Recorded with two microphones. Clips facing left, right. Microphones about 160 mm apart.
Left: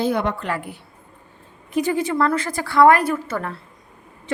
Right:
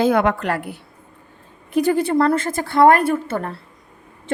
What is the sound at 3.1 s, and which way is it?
Speech, 30° right (ahead or behind).